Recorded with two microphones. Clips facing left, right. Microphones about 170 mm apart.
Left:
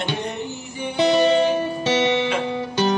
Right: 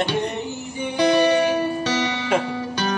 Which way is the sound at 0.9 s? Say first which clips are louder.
Left 1 dB; 20° left (ahead or behind).